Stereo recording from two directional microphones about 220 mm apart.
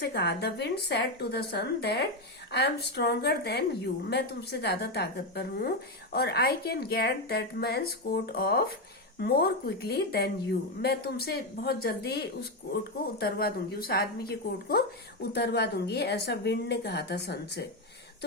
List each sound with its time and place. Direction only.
0.0 s a woman's voice: 50° left (ahead or behind)